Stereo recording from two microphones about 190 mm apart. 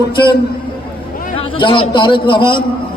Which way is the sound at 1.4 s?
25° left (ahead or behind).